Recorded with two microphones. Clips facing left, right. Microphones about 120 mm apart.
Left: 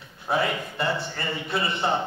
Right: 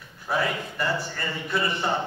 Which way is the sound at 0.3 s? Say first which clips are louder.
Left 1 dB; 25° left (ahead or behind).